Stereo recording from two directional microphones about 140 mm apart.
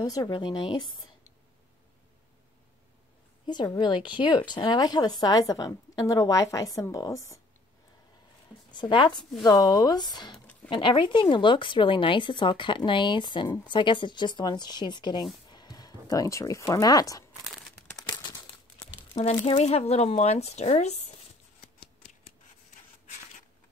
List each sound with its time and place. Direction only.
0.0 s a woman's voice: 25° left (ahead or behind)
3.4 s a woman's voice: 30° left (ahead or behind)
8.7 s a woman's voice: 35° left (ahead or behind)
18.8 s speech: 40° left (ahead or behind)